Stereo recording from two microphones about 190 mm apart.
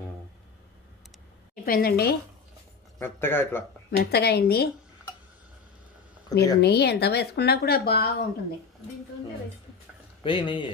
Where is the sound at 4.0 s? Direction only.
55° left (ahead or behind).